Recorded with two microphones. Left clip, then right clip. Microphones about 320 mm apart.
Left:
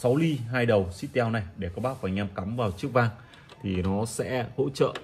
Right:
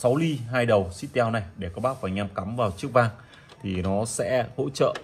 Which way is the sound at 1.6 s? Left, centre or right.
Right.